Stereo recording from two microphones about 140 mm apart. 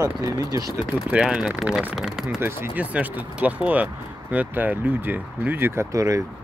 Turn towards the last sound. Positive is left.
turn(degrees=-25)  # may be behind; listen again after turning